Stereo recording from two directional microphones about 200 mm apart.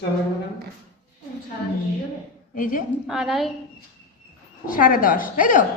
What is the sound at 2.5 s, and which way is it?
Speech, 40° left (ahead or behind).